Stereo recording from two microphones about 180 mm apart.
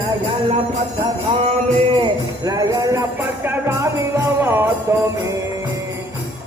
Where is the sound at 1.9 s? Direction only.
25° right (ahead or behind).